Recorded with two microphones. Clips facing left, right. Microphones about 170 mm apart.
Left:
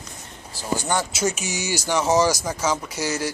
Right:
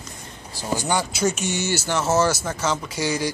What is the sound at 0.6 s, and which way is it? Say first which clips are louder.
Speech: right 1 dB; 15° right (ahead or behind).